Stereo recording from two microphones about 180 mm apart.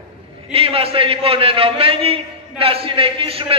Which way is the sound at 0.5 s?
30° right (ahead or behind).